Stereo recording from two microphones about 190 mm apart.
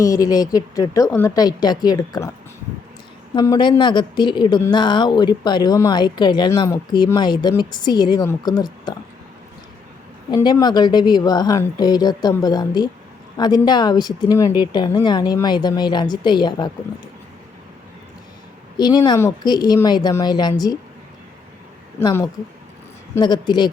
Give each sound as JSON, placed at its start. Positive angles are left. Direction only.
{"t": 0.0, "sound": "speech", "side_deg": 20}
{"t": 3.3, "sound": "speech", "side_deg": 20}
{"t": 10.3, "sound": "speech", "side_deg": 20}
{"t": 18.8, "sound": "speech", "side_deg": 20}
{"t": 22.0, "sound": "speech", "side_deg": 15}